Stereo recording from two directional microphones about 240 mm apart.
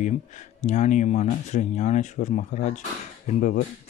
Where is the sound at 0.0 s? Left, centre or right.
Left.